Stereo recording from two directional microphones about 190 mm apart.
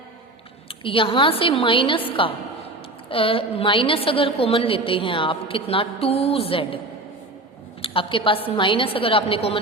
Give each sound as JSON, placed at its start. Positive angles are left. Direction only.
{"t": 0.7, "sound": "a woman's voice", "side_deg": 30}
{"t": 7.8, "sound": "a woman's voice", "side_deg": 30}